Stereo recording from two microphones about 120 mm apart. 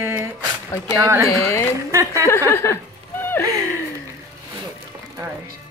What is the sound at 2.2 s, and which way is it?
Speech, 20° left (ahead or behind).